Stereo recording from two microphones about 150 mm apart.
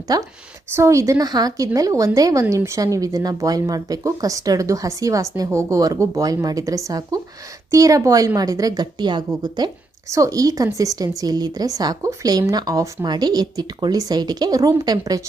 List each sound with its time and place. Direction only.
0.1 s a woman's voice: 25° right (ahead or behind)